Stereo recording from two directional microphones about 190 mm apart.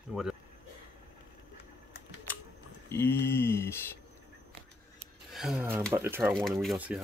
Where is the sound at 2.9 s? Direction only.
10° left (ahead or behind).